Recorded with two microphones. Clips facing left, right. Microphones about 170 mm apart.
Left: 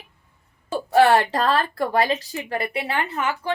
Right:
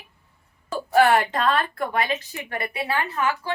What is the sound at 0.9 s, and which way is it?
A woman's voice, 30° left (ahead or behind).